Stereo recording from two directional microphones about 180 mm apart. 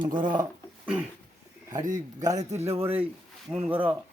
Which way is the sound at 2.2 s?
20° right (ahead or behind).